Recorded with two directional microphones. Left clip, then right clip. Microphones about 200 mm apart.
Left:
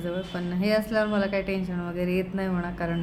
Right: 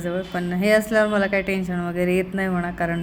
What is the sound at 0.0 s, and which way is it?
A woman's voice, 15° right (ahead or behind).